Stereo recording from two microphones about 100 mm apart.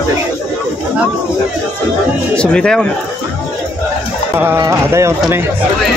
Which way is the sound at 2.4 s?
10° left (ahead or behind).